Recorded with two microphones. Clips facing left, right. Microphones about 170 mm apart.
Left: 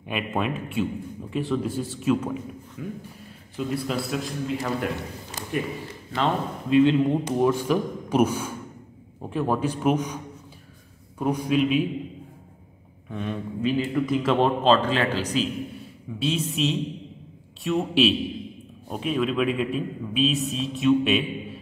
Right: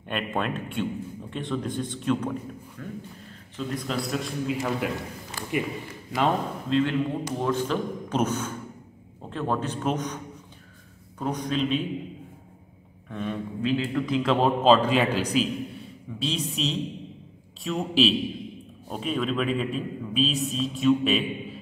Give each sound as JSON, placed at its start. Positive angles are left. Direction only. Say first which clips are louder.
{"t": 0.0, "sound": "a man's voice", "louder": "left 1 dB", "side_deg": 5}
{"t": 5.4, "sound": "a man's voice", "louder": "right 1 dB", "side_deg": 20}
{"t": 6.7, "sound": "a man's voice", "louder": "left 6 dB", "side_deg": 20}
{"t": 13.1, "sound": "a man's voice", "louder": "left 1 dB", "side_deg": 0}
{"t": 16.2, "sound": "a man's voice", "louder": "left 4 dB", "side_deg": 0}